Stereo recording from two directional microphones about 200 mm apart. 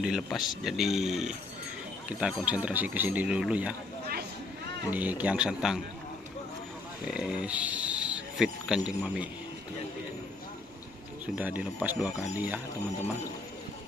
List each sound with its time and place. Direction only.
0.0 s speech: centre (ahead or behind)
4.0 s vehicle: 50° right (ahead or behind)
4.9 s speech: 10° right (ahead or behind)
7.1 s speech: 5° right (ahead or behind)
11.3 s speech: 5° right (ahead or behind)